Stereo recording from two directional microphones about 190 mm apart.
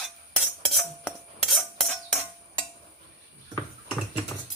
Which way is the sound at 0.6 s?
Centre (ahead or behind).